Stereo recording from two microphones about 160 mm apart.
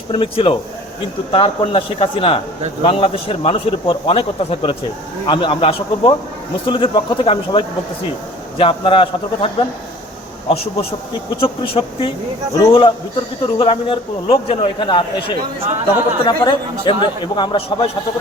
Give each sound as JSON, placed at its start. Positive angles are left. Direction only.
{"t": 0.1, "sound": "a man's voice", "side_deg": 30}
{"t": 11.3, "sound": "a man's voice", "side_deg": 35}